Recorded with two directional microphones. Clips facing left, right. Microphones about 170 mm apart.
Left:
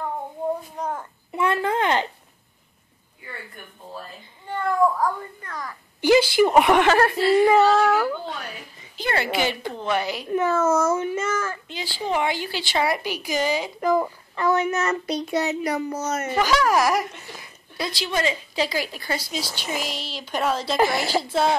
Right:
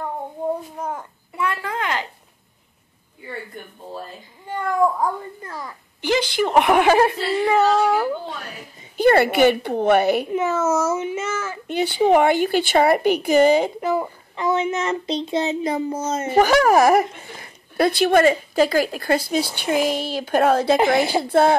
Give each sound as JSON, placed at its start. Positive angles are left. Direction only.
{"t": 0.7, "sound": "a sound", "side_deg": -5}
{"t": 1.3, "sound": "a sound", "side_deg": 25}
{"t": 4.5, "sound": "a child's voice", "side_deg": -20}
{"t": 5.9, "sound": "a woman's voice", "side_deg": 10}
{"t": 6.5, "sound": "a child's voice", "side_deg": 0}
{"t": 8.9, "sound": "speech", "side_deg": -55}
{"t": 10.3, "sound": "a child's voice", "side_deg": -10}
{"t": 11.6, "sound": "speech", "side_deg": -60}
{"t": 13.7, "sound": "a child's voice", "side_deg": -5}
{"t": 14.3, "sound": "a child's voice", "side_deg": -20}
{"t": 16.3, "sound": "speech", "side_deg": -55}